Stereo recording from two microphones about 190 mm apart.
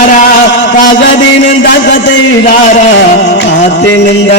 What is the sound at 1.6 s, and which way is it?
Speech, 75° left (ahead or behind).